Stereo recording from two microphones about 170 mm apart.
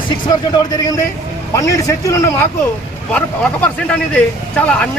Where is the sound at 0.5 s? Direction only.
20° left (ahead or behind).